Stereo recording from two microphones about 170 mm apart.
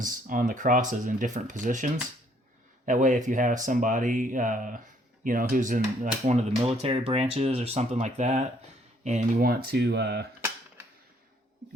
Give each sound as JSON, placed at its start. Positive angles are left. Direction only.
{"t": 0.0, "sound": "speech", "side_deg": -50}
{"t": 9.5, "sound": "speech", "side_deg": -70}